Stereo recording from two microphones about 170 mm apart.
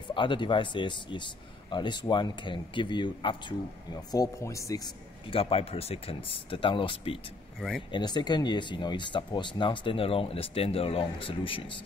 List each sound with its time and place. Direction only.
0.1 s speech: 30° left (ahead or behind)